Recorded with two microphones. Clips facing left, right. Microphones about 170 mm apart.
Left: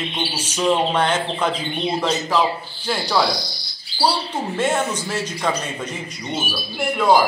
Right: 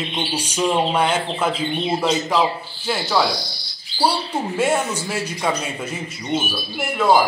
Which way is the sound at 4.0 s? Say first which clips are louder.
Right 1 dB; 10° right (ahead or behind).